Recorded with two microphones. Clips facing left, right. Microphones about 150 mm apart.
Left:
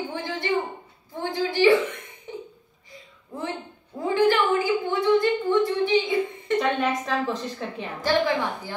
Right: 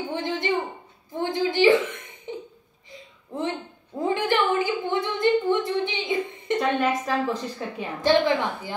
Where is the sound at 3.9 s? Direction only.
20° right (ahead or behind).